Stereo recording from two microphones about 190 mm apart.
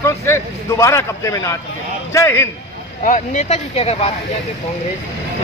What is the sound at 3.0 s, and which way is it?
Speech, 40° left (ahead or behind).